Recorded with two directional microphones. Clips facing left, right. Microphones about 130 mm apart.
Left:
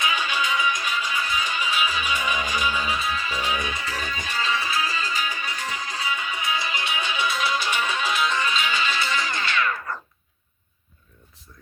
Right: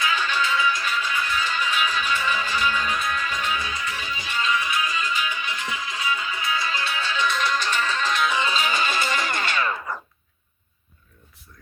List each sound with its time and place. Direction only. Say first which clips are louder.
0.0 s music: right 1 dB; 15° left (ahead or behind)
3.9 s music: left 1 dB; 45° left (ahead or behind)
4.4 s music: right 1 dB; 30° left (ahead or behind); by 8.3 s 10° left (ahead or behind)
8.5 s music: right 1 dB; 40° right (ahead or behind)
9.9 s a sound: right 1 dB; 15° right (ahead or behind)